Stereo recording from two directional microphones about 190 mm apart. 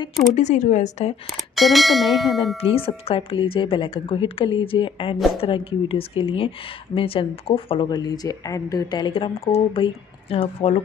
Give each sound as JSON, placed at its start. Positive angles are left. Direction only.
{"t": 0.3, "sound": "a woman's voice", "side_deg": 40}
{"t": 1.3, "sound": "speech", "side_deg": 0}
{"t": 2.5, "sound": "speech", "side_deg": 30}